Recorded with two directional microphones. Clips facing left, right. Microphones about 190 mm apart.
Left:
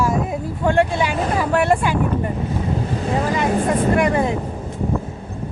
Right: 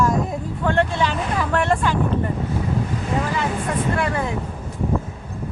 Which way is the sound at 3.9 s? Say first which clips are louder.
Left 6 dB; 20° left (ahead or behind).